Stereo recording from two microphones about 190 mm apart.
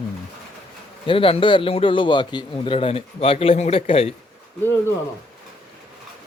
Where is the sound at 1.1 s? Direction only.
30° left (ahead or behind).